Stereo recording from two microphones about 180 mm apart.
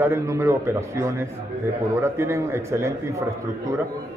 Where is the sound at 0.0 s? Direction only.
15° right (ahead or behind).